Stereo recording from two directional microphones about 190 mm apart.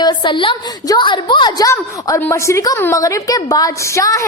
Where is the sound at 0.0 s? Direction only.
25° left (ahead or behind).